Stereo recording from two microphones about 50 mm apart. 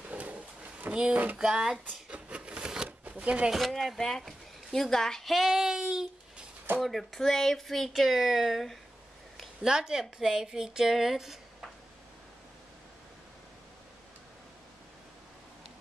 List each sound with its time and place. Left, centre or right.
0.1 s drawer open or close: right
1.4 s speech: centre
2.0 s a sound: right
3.5 s speech: centre
4.2 s a sound: centre
4.7 s speech: centre
6.8 s speech: centre
9.6 s speech: centre